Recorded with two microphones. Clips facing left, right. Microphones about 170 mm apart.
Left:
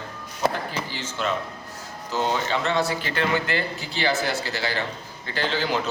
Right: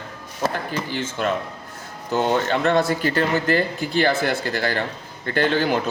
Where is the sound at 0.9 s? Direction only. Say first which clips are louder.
Right 4 dB; 50° right (ahead or behind).